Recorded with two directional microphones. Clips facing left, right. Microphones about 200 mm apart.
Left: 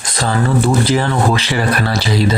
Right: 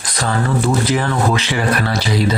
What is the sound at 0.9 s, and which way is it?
Speech, 30° left (ahead or behind).